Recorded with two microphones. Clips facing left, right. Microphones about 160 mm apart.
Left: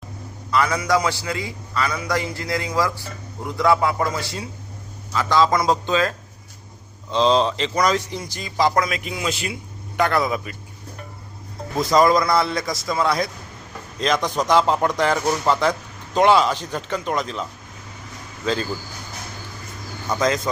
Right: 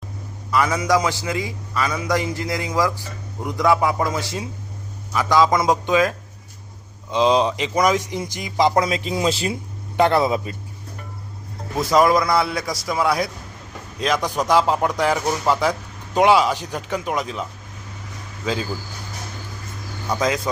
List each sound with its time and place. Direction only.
0.5 s a man's voice: 20° right (ahead or behind)
11.8 s a man's voice: 5° right (ahead or behind)
18.4 s a man's voice: 5° right (ahead or behind)
20.1 s a man's voice: 10° right (ahead or behind)